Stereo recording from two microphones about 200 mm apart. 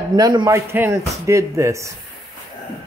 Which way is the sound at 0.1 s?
20° right (ahead or behind).